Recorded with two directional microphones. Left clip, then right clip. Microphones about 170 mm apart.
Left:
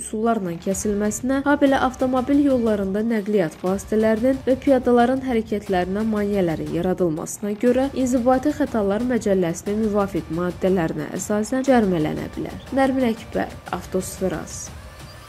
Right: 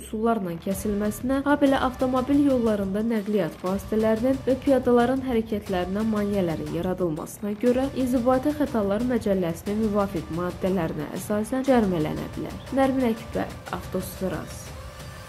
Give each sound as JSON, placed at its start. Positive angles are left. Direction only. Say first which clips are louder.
{"t": 0.2, "sound": "a woman's voice", "louder": "left 3 dB", "side_deg": 45}